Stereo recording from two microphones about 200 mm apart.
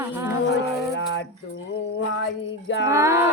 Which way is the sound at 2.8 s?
15° right (ahead or behind).